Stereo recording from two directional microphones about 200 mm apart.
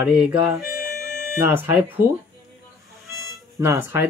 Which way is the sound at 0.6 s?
50° left (ahead or behind).